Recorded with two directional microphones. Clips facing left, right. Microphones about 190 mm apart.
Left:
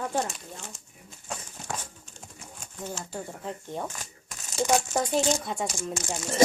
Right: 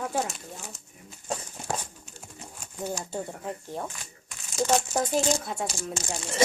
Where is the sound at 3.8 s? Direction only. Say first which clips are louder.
Left 1 dB; 40° left (ahead or behind).